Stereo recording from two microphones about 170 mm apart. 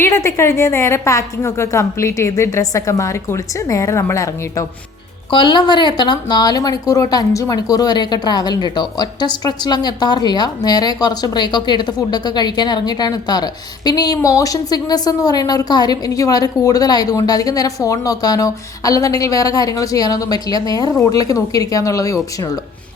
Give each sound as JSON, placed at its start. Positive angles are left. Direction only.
{"t": 0.0, "sound": "a woman's voice", "side_deg": 15}